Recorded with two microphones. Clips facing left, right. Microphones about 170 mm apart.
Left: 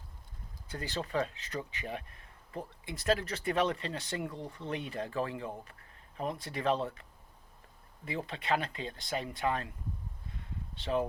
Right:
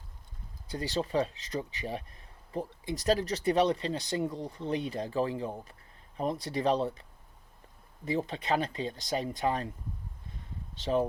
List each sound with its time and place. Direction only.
0.7 s speech: 35° right (ahead or behind)
8.0 s speech: 35° right (ahead or behind)
10.9 s speech: 30° right (ahead or behind)